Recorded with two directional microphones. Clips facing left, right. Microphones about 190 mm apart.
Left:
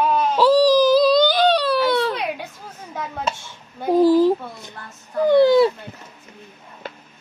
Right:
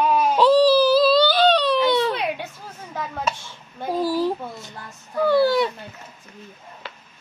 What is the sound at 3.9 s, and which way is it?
A child's voice, 15° left (ahead or behind).